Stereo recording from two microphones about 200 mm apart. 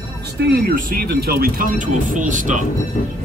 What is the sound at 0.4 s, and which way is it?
Speech, 55° right (ahead or behind).